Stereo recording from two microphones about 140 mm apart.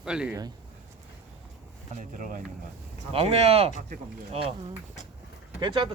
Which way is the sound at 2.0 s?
75° right (ahead or behind).